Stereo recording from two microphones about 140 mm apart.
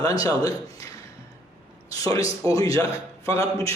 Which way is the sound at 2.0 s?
25° left (ahead or behind).